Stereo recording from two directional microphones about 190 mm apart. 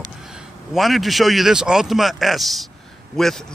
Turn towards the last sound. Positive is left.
turn(degrees=0)  # may be behind; listen again after turning